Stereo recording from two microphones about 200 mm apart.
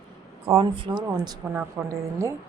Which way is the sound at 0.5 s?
25° right (ahead or behind).